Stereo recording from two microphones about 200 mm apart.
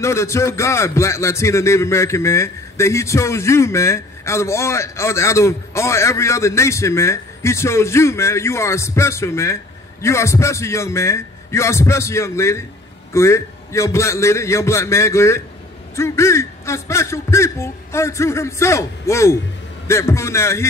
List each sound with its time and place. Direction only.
0.0 s speech: 15° left (ahead or behind)